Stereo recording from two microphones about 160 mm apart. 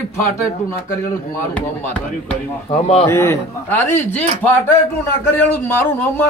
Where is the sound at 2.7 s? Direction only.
40° left (ahead or behind).